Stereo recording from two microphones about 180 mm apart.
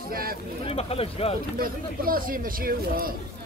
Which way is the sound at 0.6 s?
35° left (ahead or behind).